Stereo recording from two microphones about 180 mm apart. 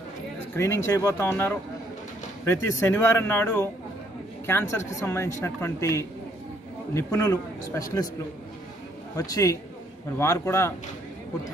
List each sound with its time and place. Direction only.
0.6 s a woman's voice: 15° left (ahead or behind)
9.1 s a woman's voice: 20° left (ahead or behind)